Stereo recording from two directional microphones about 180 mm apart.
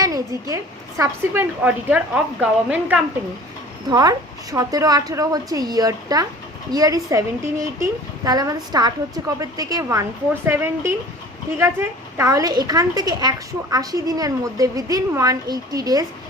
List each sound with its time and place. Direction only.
0.0 s a woman's voice: 20° right (ahead or behind)
3.8 s a woman's voice: 20° right (ahead or behind)